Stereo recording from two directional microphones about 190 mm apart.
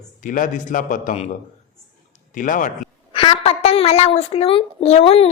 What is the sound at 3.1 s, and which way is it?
A child's voice, 30° left (ahead or behind).